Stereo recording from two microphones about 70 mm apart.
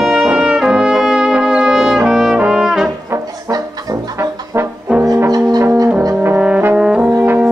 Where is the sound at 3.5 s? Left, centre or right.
Right.